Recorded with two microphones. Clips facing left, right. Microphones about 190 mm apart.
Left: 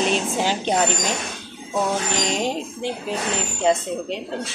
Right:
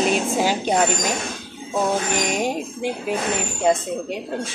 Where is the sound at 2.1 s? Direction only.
15° right (ahead or behind).